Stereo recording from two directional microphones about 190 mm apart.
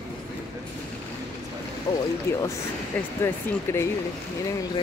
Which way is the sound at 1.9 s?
20° left (ahead or behind).